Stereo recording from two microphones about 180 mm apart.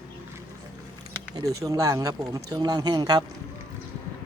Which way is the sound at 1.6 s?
20° right (ahead or behind).